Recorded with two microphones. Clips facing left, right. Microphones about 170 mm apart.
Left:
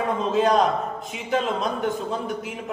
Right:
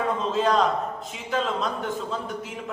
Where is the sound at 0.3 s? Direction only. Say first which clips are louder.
Left 3 dB; 15° left (ahead or behind).